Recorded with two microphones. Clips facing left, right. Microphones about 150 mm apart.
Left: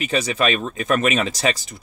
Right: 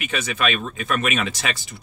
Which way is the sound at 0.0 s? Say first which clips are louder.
Left 4 dB; 35° left (ahead or behind).